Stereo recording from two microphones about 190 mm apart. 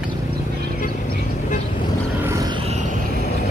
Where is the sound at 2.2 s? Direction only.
15° right (ahead or behind).